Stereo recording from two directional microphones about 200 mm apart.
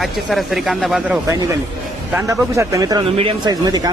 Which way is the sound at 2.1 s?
15° right (ahead or behind).